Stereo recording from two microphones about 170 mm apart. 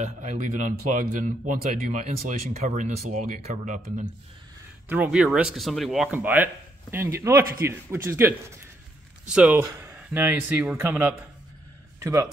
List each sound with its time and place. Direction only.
0.0 s speech: 45° right (ahead or behind)
4.8 s a man's voice: 10° right (ahead or behind)